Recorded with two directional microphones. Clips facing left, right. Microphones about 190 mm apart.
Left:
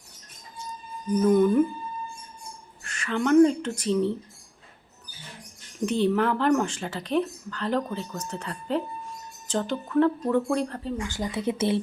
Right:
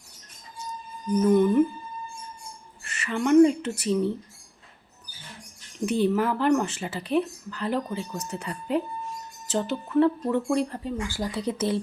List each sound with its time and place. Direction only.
1.3 s speech: centre (ahead or behind)
2.8 s speech: 5° right (ahead or behind)
5.8 s speech: 10° right (ahead or behind)
11.3 s speech: 25° left (ahead or behind)